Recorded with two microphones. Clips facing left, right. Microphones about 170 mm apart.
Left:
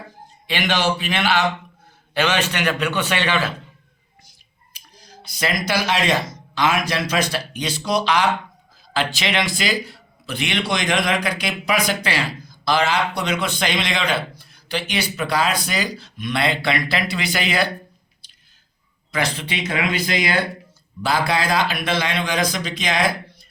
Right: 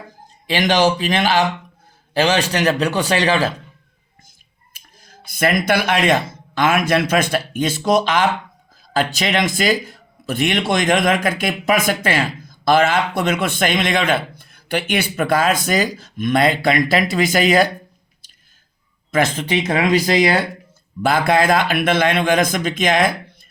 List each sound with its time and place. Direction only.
0.4 s a man's voice: 40° right (ahead or behind)
4.7 s speech: 50° right (ahead or behind)
19.1 s a man's voice: 45° right (ahead or behind)
21.0 s speech: 50° right (ahead or behind)